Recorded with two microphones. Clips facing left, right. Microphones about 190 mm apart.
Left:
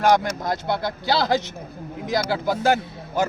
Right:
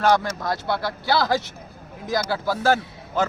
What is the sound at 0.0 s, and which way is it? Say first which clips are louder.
A man's voice: left 1 dB; 20° left (ahead or behind).